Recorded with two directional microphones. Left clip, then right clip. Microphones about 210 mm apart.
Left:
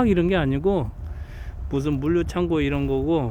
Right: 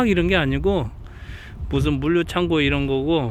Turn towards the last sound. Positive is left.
turn(degrees=5)  # may be behind; listen again after turning